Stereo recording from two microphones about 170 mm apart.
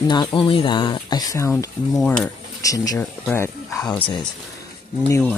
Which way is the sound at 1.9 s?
Centre (ahead or behind).